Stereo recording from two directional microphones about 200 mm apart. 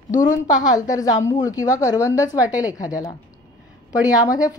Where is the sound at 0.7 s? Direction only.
15° left (ahead or behind).